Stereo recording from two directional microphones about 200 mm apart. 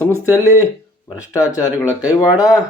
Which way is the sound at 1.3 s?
15° left (ahead or behind).